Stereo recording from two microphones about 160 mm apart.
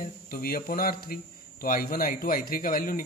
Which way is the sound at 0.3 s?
70° left (ahead or behind).